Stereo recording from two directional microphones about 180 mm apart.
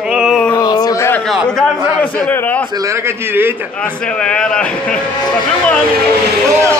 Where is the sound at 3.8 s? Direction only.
5° left (ahead or behind).